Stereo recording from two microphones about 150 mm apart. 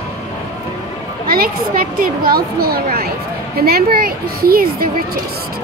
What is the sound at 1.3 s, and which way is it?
A woman's voice, 75° right (ahead or behind).